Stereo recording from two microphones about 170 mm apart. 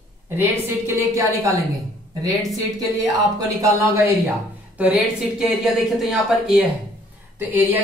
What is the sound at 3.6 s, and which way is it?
Speech, 20° right (ahead or behind).